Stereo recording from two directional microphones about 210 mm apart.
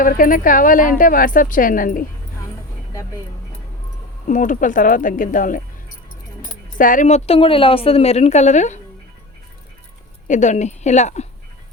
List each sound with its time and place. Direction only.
0.0 s a woman's voice: 40° left (ahead or behind)
4.3 s a woman's voice: 40° left (ahead or behind)
6.7 s a woman's voice: 40° left (ahead or behind)
10.2 s a woman's voice: 35° left (ahead or behind)